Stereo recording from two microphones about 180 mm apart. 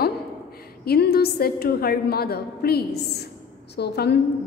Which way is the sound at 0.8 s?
60° left (ahead or behind).